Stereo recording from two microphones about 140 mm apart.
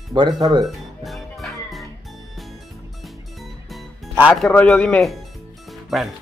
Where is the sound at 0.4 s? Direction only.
30° right (ahead or behind).